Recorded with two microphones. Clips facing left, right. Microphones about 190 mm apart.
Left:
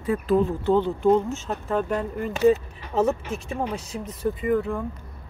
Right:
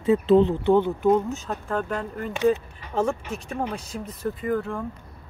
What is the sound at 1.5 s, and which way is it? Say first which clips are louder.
Speech: left 2 dB; 5° left (ahead or behind).